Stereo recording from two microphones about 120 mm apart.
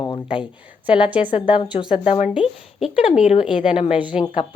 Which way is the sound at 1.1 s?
10° right (ahead or behind).